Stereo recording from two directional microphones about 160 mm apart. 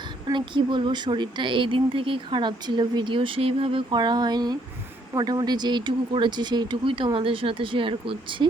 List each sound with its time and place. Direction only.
0.3 s speech: 30° right (ahead or behind)